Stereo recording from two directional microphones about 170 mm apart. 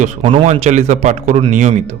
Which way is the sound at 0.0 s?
30° right (ahead or behind).